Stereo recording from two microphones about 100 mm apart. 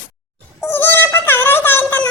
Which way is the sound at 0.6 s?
20° left (ahead or behind).